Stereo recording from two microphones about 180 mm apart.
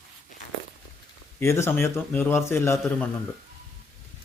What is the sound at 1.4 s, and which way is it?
Speech, 15° left (ahead or behind).